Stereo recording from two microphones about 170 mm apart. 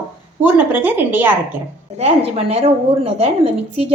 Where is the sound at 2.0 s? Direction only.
35° right (ahead or behind).